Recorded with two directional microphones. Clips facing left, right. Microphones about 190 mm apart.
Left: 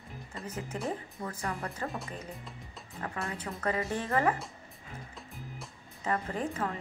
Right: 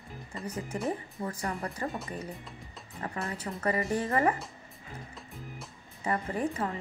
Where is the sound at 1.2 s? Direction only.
10° right (ahead or behind).